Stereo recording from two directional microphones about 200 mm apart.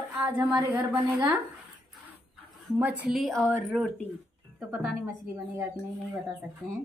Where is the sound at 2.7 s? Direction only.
10° right (ahead or behind).